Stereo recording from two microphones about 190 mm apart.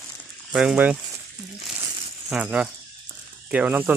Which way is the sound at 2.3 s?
5° right (ahead or behind).